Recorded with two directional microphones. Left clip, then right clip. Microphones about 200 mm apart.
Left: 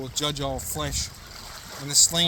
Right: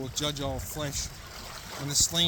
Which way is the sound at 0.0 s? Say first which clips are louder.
Left 4 dB; 35° left (ahead or behind).